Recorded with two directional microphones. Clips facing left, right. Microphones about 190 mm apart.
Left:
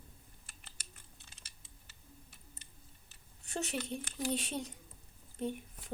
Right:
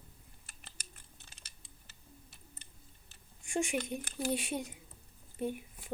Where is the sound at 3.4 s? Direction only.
10° right (ahead or behind).